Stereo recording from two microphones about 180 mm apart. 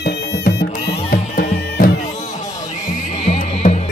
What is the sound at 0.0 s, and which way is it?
Music, 65° left (ahead or behind).